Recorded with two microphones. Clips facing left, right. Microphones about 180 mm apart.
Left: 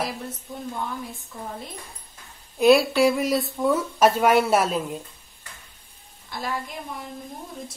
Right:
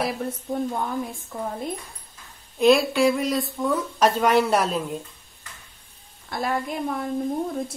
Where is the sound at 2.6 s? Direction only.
5° left (ahead or behind).